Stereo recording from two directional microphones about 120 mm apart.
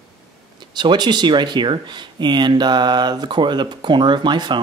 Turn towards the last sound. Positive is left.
turn(degrees=-40)  # may be behind; listen again after turning